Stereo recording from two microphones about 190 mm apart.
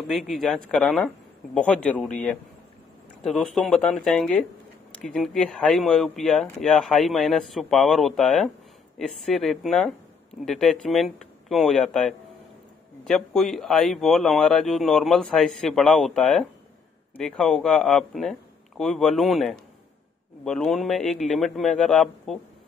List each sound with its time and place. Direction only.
0.1 s speech: centre (ahead or behind)